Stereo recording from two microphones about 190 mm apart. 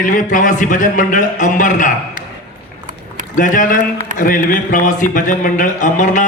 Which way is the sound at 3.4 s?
45° left (ahead or behind).